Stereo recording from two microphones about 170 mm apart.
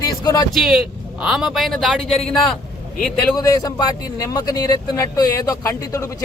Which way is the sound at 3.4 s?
20° left (ahead or behind).